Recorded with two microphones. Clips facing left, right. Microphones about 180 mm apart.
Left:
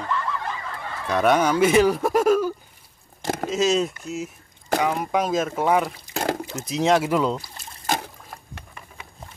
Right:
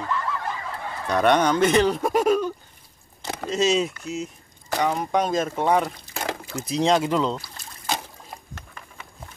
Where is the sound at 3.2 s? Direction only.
50° left (ahead or behind).